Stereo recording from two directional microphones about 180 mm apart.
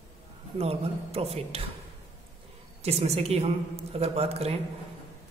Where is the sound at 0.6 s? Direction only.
35° right (ahead or behind).